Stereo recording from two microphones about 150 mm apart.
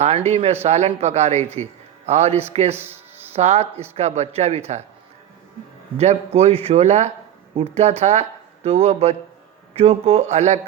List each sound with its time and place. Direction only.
0.0 s a man's voice: 45° right (ahead or behind)
2.7 s music: 15° right (ahead or behind)
3.3 s a man's voice: 45° right (ahead or behind)
6.0 s a man's voice: 45° right (ahead or behind)